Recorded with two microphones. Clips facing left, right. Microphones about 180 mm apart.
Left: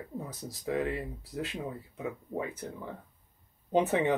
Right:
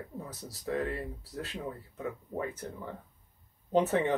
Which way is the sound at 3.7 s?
15° left (ahead or behind).